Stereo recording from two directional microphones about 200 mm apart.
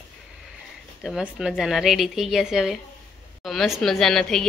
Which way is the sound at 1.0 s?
5° right (ahead or behind).